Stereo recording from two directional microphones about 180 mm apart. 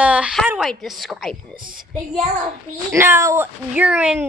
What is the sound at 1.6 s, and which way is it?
Speech, 50° right (ahead or behind).